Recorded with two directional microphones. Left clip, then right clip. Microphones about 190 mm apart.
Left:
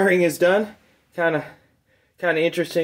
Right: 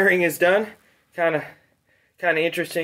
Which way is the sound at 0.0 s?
35° right (ahead or behind).